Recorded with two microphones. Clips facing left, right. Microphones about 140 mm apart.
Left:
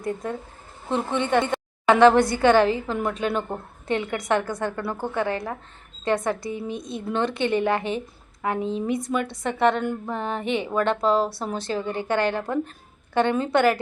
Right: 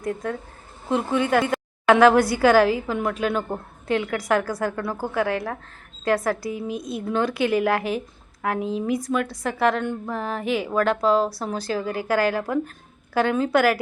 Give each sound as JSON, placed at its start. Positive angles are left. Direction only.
{"t": 0.0, "sound": "a woman's voice", "side_deg": 0}